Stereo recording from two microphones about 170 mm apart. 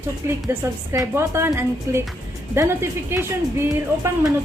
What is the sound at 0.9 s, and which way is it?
A woman's voice, 15° right (ahead or behind).